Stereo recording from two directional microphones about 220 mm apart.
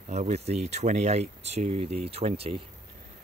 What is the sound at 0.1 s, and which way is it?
Speech, 30° right (ahead or behind).